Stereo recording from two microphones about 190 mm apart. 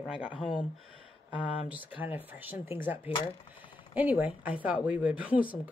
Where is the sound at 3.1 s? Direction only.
25° left (ahead or behind).